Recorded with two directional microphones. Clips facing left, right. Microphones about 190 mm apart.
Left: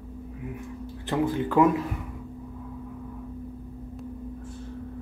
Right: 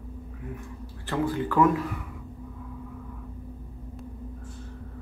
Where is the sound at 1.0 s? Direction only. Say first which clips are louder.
Left 2 dB; 20° left (ahead or behind).